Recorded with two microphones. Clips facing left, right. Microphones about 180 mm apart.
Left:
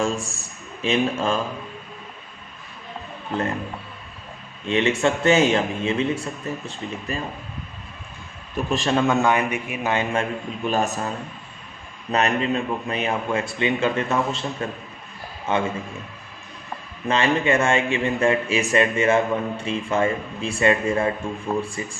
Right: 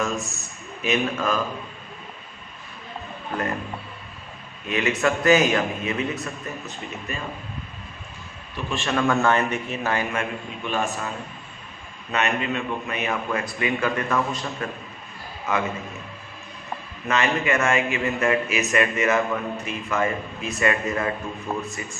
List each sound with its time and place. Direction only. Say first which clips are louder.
0.8 s a man's voice: left 2 dB; 30° left (ahead or behind)
4.6 s a man's voice: left 3 dB; 30° left (ahead or behind)
8.5 s a man's voice: left 5 dB; 35° left (ahead or behind)
9.0 s a man's voice: even; 20° left (ahead or behind); by 11.1 s 40° left (ahead or behind)
12.1 s a man's voice: left 3 dB; 35° left (ahead or behind)
17.1 s a man's voice: left 3 dB; 30° left (ahead or behind)